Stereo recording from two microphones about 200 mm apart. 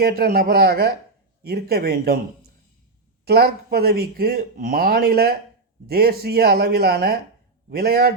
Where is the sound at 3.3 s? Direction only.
50° right (ahead or behind).